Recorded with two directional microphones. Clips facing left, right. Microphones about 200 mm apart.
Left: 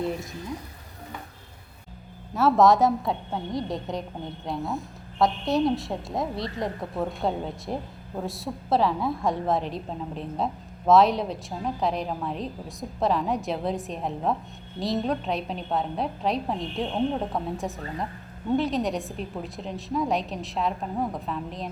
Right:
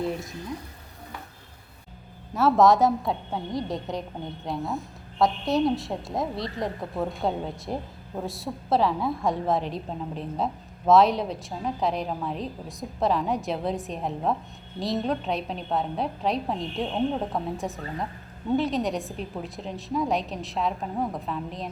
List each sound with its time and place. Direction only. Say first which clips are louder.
0.0 s speech: even; centre (ahead or behind)
2.3 s a woman's voice: even; centre (ahead or behind)